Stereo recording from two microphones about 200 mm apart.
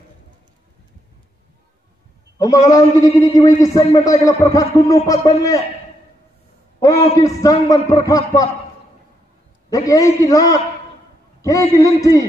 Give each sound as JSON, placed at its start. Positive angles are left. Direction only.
{"t": 2.3, "sound": "a man's voice", "side_deg": 20}
{"t": 6.8, "sound": "a man's voice", "side_deg": 15}
{"t": 9.7, "sound": "a man's voice", "side_deg": 15}